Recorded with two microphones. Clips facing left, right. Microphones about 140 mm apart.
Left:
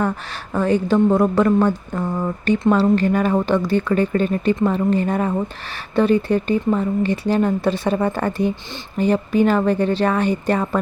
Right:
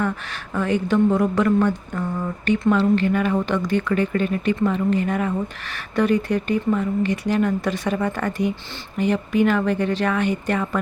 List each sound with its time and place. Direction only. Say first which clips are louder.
0.0 s speech: left 2 dB; 35° left (ahead or behind)